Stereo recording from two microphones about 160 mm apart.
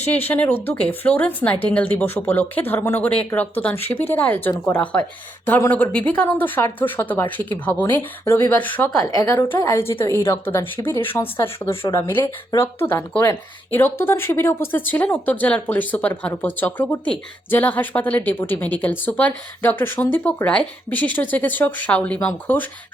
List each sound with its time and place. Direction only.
0.3 s a woman's voice: 10° left (ahead or behind)
9.0 s a woman's voice: 20° left (ahead or behind)